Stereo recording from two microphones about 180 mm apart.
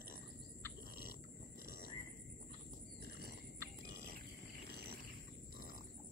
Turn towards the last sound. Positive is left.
turn(degrees=-60)  # may be behind; listen again after turning